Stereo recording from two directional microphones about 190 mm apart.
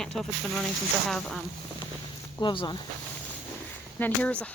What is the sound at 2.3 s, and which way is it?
Speech, 25° left (ahead or behind).